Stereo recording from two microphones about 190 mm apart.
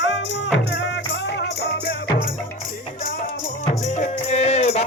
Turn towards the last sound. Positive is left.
turn(degrees=35)  # may be behind; listen again after turning